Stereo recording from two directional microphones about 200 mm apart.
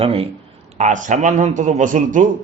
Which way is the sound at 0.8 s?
40° right (ahead or behind).